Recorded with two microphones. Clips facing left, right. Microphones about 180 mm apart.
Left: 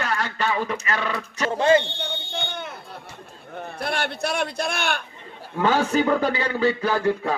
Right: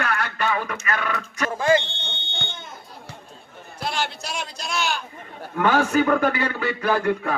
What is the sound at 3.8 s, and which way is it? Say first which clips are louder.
A man's voice: left 1 dB; 60° left (ahead or behind).